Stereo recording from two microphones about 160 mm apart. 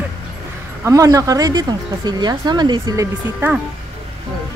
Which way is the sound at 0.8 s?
20° right (ahead or behind).